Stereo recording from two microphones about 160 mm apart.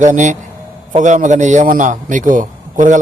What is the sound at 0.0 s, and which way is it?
A man's voice, 50° right (ahead or behind).